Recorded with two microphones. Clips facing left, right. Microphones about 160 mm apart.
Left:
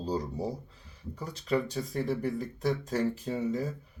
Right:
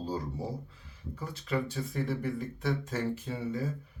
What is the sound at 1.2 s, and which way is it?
Speech, 40° left (ahead or behind).